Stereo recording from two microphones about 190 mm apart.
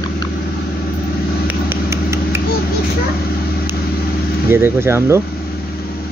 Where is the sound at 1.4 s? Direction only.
15° right (ahead or behind).